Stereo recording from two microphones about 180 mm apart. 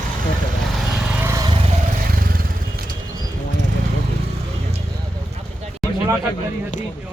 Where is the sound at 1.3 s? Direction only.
20° right (ahead or behind).